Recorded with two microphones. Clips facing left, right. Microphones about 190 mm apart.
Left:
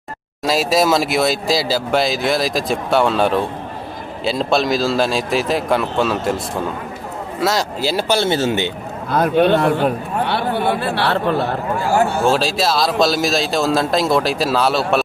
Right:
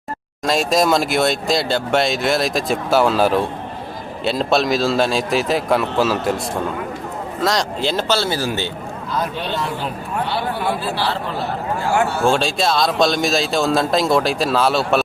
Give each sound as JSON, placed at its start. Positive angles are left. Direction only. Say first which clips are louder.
{"t": 0.4, "sound": "speech", "louder": "left 1 dB", "side_deg": 5}
{"t": 9.1, "sound": "a man's voice", "louder": "left 10 dB", "side_deg": 55}
{"t": 12.3, "sound": "speech", "louder": "left 1 dB", "side_deg": 0}